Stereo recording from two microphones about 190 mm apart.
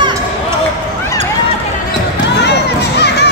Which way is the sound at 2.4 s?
60° left (ahead or behind).